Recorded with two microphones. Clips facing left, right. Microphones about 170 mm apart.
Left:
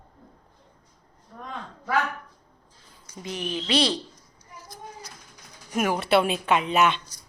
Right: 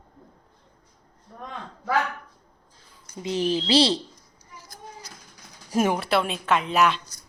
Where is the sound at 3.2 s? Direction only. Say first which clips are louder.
Right 7 dB; 25° right (ahead or behind).